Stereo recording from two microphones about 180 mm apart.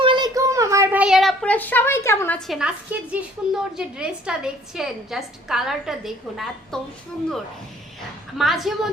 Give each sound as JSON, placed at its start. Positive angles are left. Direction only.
{"t": 0.0, "sound": "a sound", "side_deg": -25}
{"t": 2.5, "sound": "a woman's voice", "side_deg": -5}
{"t": 8.4, "sound": "a woman's voice", "side_deg": 0}